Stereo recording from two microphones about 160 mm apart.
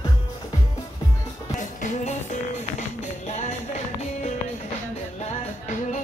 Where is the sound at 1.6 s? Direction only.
50° left (ahead or behind).